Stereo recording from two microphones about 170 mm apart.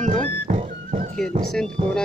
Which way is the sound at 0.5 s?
50° right (ahead or behind).